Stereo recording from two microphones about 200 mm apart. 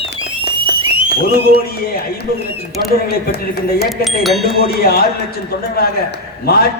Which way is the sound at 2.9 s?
50° left (ahead or behind).